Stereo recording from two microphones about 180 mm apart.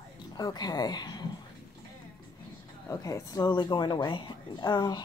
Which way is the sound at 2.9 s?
15° left (ahead or behind).